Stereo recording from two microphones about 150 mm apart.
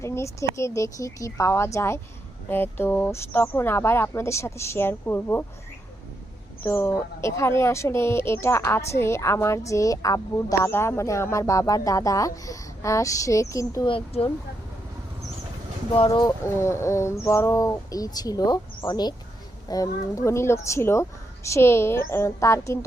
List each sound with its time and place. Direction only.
0.0 s a woman's voice: 20° left (ahead or behind)
6.6 s a woman's voice: 15° left (ahead or behind)
13.8 s speech: 40° left (ahead or behind)
16.0 s speech: 30° left (ahead or behind)
16.6 s a woman's voice: 20° left (ahead or behind)